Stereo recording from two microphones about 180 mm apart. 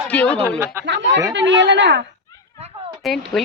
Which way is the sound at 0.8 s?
80° right.